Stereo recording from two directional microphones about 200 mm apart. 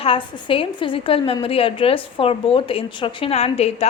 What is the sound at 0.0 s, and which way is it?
A woman's voice, 25° left (ahead or behind).